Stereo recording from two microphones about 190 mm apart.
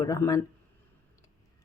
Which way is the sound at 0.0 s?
15° left (ahead or behind).